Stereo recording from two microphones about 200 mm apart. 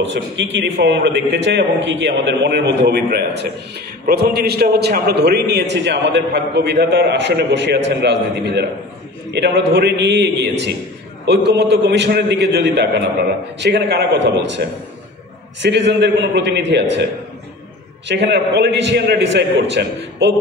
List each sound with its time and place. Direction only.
0.0 s a man's voice: 60° right (ahead or behind)